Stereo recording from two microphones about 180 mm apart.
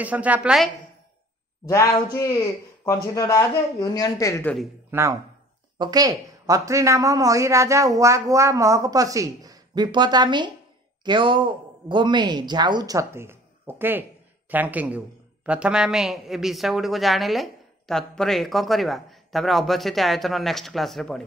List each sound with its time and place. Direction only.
0.0 s a woman's voice: 10° right (ahead or behind)
1.7 s speech: 20° left (ahead or behind)
4.9 s a woman's voice: 15° right (ahead or behind); by 21.2 s centre (ahead or behind)